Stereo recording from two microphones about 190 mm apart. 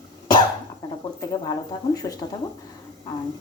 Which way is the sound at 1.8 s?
20° left (ahead or behind).